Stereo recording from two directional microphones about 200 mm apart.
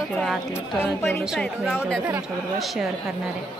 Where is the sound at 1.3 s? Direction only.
10° left (ahead or behind).